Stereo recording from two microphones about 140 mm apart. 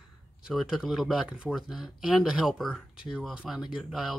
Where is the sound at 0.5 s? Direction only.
5° right (ahead or behind).